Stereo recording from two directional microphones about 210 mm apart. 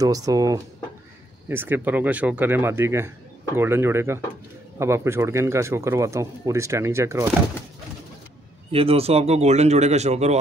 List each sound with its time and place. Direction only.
0.0 s speech: 15° right (ahead or behind)
8.7 s speech: 30° right (ahead or behind)